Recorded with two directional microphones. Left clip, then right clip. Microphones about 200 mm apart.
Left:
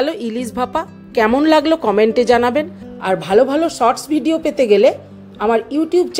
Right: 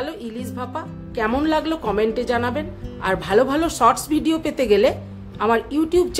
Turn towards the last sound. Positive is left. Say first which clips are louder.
# left 3 dB
turn(degrees=10)  # may be behind; listen again after turning